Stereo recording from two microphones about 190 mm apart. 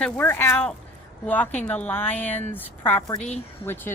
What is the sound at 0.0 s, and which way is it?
Speech, 10° left (ahead or behind).